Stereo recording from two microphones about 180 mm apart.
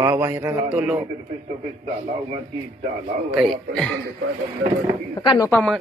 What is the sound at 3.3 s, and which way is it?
Speech, centre (ahead or behind).